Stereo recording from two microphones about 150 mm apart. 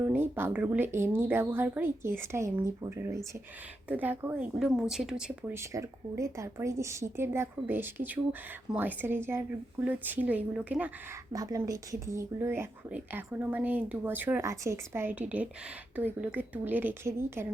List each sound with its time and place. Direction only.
0.0 s speech: 15° right (ahead or behind)
4.6 s speech: 5° right (ahead or behind)
5.7 s speech: 20° right (ahead or behind)
11.3 s speech: 25° right (ahead or behind)